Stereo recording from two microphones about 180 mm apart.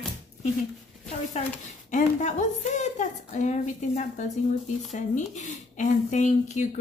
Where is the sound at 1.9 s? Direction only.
45° left (ahead or behind).